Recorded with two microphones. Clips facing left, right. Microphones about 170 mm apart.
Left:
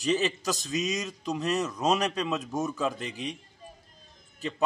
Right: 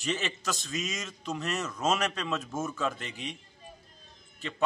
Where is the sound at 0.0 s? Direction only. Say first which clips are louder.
Left 6 dB; 35° left (ahead or behind).